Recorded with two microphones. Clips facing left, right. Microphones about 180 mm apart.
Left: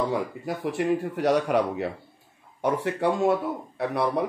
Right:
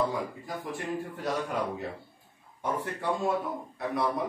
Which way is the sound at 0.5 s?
75° left (ahead or behind).